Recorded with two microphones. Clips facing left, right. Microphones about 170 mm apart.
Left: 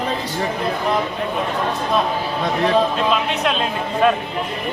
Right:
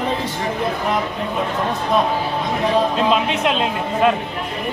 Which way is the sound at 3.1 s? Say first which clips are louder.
Right 2 dB; 20° right (ahead or behind).